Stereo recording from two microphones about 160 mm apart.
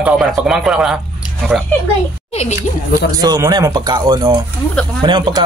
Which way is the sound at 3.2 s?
25° right (ahead or behind).